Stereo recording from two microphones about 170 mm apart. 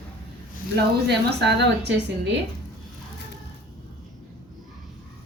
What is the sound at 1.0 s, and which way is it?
A woman's voice, 80° right.